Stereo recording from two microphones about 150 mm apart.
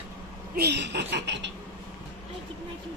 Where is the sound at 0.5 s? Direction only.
90° right.